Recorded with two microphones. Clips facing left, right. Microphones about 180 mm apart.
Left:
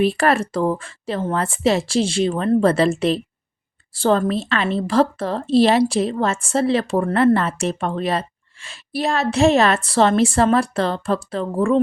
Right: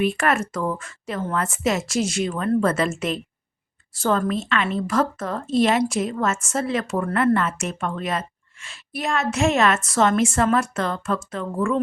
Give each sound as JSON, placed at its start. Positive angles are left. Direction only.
{"t": 0.0, "sound": "a woman's voice", "side_deg": 35}